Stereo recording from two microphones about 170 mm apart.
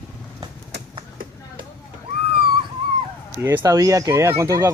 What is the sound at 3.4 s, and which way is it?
Speech, 15° right (ahead or behind).